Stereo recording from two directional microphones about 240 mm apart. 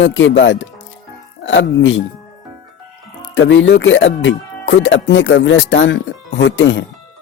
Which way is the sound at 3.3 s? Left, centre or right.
Left.